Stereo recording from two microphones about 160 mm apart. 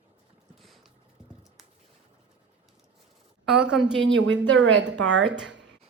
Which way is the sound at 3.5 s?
5° right (ahead or behind).